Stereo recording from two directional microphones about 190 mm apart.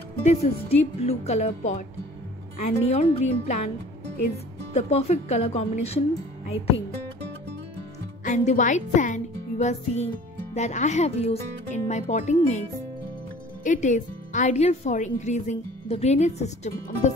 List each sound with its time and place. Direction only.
0.2 s speech: 35° left (ahead or behind)
4.7 s speech: 30° left (ahead or behind)
8.2 s speech: 40° left (ahead or behind)
13.7 s speech: 40° left (ahead or behind)